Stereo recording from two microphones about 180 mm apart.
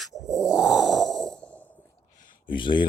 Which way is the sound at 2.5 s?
25° left (ahead or behind).